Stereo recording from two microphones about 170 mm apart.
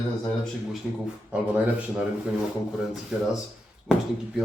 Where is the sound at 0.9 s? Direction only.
5° right (ahead or behind).